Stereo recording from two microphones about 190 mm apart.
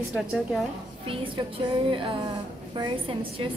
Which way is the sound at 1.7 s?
25° right (ahead or behind).